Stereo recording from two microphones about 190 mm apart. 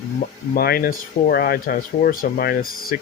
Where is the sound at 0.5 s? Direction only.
55° left (ahead or behind).